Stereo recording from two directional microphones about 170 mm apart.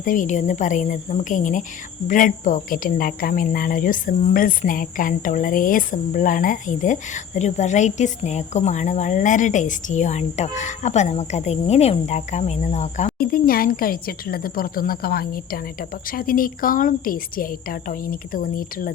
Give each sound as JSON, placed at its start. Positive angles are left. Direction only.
{"t": 0.0, "sound": "speech", "side_deg": 50}
{"t": 13.1, "sound": "a woman's voice", "side_deg": 60}